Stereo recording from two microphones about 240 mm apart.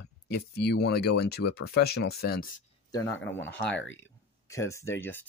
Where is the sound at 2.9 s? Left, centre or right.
Centre.